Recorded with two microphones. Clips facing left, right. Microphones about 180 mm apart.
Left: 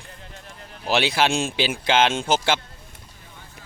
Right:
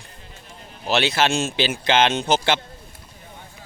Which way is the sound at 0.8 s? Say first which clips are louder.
Right 1 dB; 10° left (ahead or behind).